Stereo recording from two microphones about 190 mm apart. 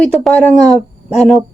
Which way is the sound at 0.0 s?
Centre (ahead or behind).